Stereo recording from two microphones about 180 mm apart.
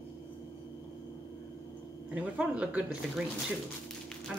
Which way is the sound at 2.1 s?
5° right (ahead or behind).